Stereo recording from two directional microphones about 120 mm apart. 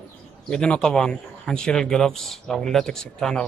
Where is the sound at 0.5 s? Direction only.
5° left (ahead or behind).